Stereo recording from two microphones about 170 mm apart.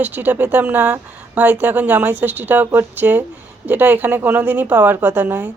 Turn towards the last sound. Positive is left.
turn(degrees=-10)  # may be behind; listen again after turning